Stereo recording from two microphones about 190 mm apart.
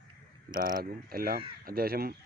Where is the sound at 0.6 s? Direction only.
50° right (ahead or behind).